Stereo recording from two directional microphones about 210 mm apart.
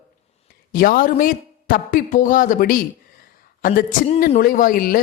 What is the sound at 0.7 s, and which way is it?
A man's voice, 40° left (ahead or behind).